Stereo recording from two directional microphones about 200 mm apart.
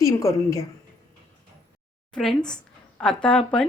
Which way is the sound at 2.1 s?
5° left (ahead or behind).